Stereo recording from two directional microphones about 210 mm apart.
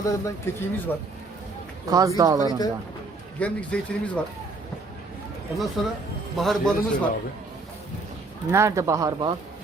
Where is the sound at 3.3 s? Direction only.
5° left (ahead or behind).